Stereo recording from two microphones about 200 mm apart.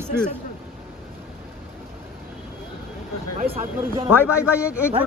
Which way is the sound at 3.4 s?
50° right (ahead or behind).